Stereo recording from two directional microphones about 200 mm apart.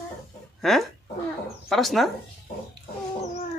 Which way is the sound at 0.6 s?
Centre (ahead or behind).